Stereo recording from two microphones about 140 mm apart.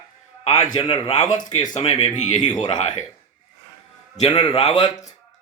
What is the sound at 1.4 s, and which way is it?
Speech, 65° left (ahead or behind).